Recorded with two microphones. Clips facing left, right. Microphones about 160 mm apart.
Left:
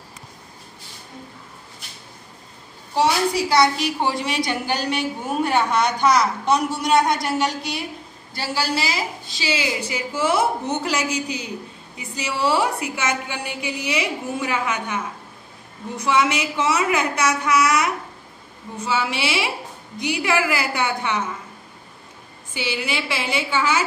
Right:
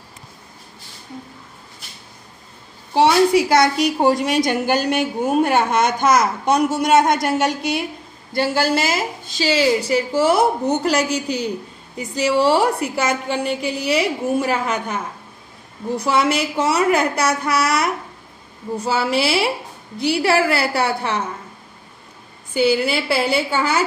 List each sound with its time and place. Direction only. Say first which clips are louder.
2.9 s a woman's voice: right 6 dB; 60° right (ahead or behind); by 15.0 s 40° right (ahead or behind)
16.0 s a woman's voice: right 1 dB; 35° right (ahead or behind)
22.5 s a woman's voice: right 9 dB; 40° right (ahead or behind)